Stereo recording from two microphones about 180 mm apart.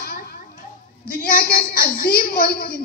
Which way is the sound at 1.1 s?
55° left (ahead or behind).